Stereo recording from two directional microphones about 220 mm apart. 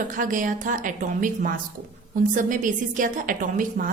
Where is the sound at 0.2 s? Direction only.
35° right (ahead or behind).